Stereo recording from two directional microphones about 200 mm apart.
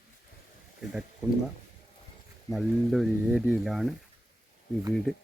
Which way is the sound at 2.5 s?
Centre (ahead or behind).